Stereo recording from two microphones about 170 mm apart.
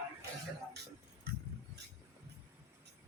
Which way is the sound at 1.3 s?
70° right (ahead or behind).